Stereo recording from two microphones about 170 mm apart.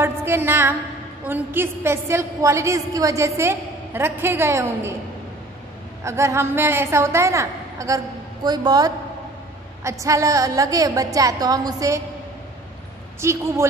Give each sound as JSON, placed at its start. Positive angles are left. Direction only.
{"t": 0.0, "sound": "a woman's voice", "side_deg": -15}
{"t": 6.0, "sound": "a woman's voice", "side_deg": -15}
{"t": 13.2, "sound": "a woman's voice", "side_deg": -15}